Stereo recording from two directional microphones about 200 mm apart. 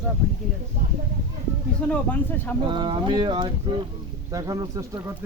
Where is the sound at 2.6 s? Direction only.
25° right (ahead or behind).